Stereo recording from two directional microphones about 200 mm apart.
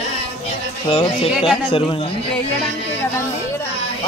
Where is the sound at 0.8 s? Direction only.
30° left (ahead or behind).